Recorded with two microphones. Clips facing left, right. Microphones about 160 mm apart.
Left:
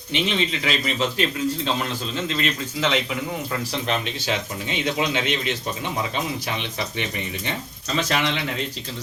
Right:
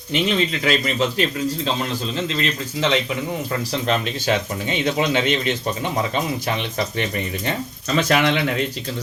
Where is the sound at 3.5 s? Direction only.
40° right (ahead or behind).